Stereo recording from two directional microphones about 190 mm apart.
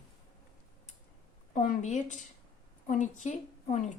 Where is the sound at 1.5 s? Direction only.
40° left (ahead or behind).